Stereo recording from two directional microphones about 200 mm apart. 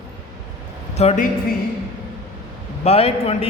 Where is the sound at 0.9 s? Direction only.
35° left (ahead or behind).